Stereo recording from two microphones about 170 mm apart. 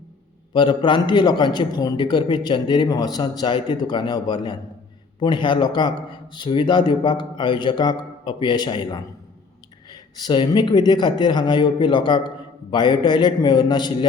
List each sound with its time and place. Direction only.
0.5 s a man's voice: 30° left (ahead or behind)